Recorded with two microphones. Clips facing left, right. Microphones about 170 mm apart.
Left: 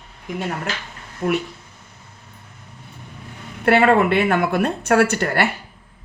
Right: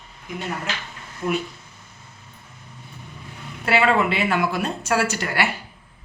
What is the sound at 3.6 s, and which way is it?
A woman's voice, 55° left (ahead or behind).